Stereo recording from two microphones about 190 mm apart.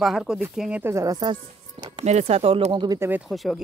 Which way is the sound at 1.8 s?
30° right (ahead or behind).